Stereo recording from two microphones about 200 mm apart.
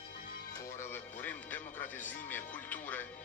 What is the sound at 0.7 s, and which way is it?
Music, 10° left (ahead or behind).